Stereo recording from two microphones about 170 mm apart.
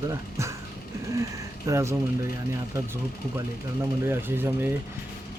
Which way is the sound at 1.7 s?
15° right (ahead or behind).